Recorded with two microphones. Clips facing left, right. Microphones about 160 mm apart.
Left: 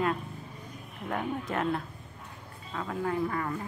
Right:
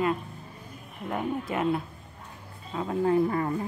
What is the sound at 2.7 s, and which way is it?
Speech, 25° right (ahead or behind).